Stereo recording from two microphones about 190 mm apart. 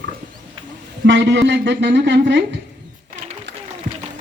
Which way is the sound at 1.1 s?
70° right (ahead or behind).